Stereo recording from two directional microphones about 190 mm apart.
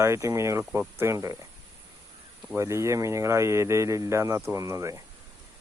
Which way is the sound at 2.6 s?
15° right (ahead or behind).